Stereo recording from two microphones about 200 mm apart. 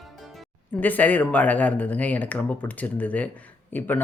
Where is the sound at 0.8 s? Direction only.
10° left (ahead or behind).